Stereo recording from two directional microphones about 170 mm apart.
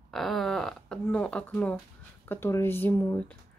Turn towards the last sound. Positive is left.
turn(degrees=10)  # may be behind; listen again after turning